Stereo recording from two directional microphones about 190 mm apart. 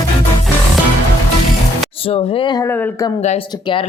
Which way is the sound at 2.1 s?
25° left (ahead or behind).